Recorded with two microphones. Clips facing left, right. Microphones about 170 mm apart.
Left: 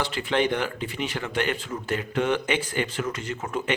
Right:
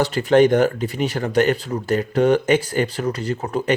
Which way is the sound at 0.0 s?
40° right (ahead or behind).